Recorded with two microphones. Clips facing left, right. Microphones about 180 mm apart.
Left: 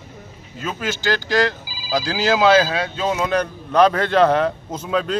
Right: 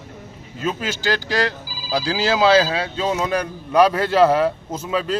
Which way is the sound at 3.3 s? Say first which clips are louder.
Left 1 dB; 10° right (ahead or behind).